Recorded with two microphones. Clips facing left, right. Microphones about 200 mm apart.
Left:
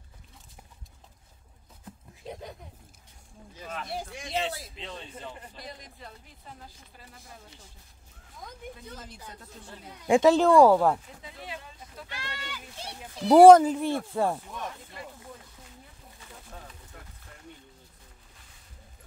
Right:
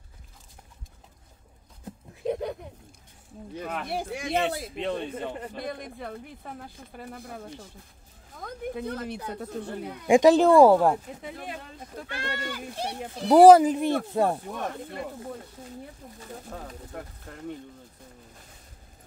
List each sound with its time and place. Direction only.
3.5 s speech: 60° right (ahead or behind)
10.0 s speech: 15° right (ahead or behind)
11.2 s speech: 50° right (ahead or behind)
13.3 s speech: centre (ahead or behind)
13.7 s speech: 15° right (ahead or behind)
14.5 s speech: 55° right (ahead or behind)
16.2 s speech: 40° right (ahead or behind)
16.4 s speech: 65° right (ahead or behind)